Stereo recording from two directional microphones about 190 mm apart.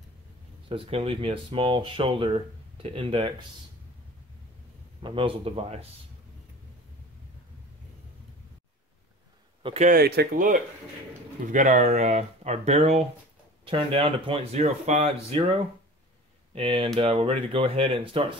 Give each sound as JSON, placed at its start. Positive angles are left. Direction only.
{"t": 0.7, "sound": "speech", "side_deg": -30}
{"t": 5.0, "sound": "speech", "side_deg": -25}
{"t": 9.6, "sound": "a sound", "side_deg": -25}
{"t": 9.8, "sound": "speech", "side_deg": -55}